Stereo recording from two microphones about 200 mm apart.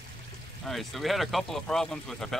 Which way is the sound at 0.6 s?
Centre (ahead or behind).